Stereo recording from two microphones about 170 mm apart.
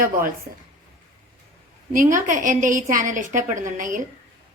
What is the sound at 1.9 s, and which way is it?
A woman's voice, 50° right (ahead or behind).